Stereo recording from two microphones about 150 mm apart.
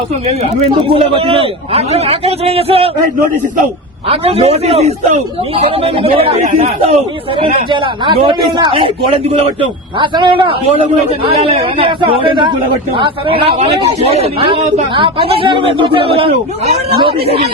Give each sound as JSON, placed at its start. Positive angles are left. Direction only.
{"t": 0.9, "sound": "speech", "side_deg": -40}
{"t": 4.1, "sound": "speech", "side_deg": -40}
{"t": 8.2, "sound": "speech", "side_deg": -35}